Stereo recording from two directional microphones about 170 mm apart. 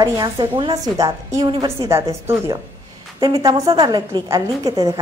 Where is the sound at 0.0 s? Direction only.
25° right (ahead or behind).